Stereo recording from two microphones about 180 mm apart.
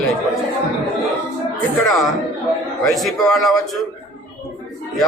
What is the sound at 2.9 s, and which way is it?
Speech, centre (ahead or behind).